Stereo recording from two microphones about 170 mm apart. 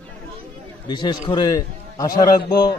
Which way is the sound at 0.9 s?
25° left (ahead or behind).